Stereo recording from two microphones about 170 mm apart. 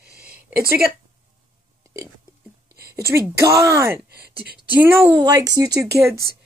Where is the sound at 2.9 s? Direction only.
15° right (ahead or behind).